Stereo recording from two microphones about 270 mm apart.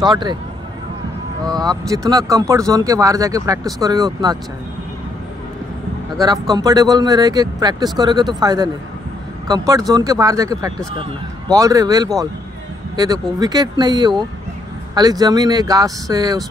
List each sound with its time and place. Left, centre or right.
0.0 s speech: centre
1.4 s speech: centre
6.5 s speech: centre